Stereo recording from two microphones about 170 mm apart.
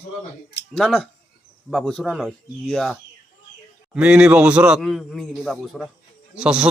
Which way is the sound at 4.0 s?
5° right (ahead or behind).